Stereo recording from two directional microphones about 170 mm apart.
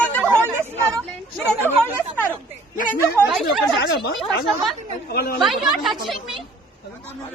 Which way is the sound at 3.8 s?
70° left (ahead or behind).